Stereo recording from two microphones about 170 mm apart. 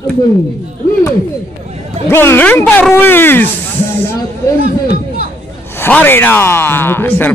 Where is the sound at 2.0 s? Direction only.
15° left (ahead or behind).